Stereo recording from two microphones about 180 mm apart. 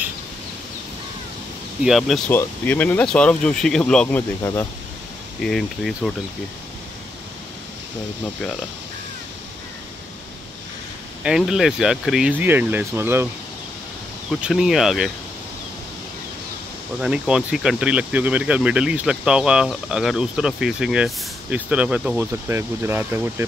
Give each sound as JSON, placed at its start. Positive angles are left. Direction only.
{"t": 1.8, "sound": "speech", "side_deg": 0}
{"t": 4.4, "sound": "speech", "side_deg": 15}
{"t": 5.4, "sound": "speech", "side_deg": 5}
{"t": 11.2, "sound": "speech", "side_deg": -5}
{"t": 14.4, "sound": "speech", "side_deg": 0}
{"t": 17.0, "sound": "speech", "side_deg": -5}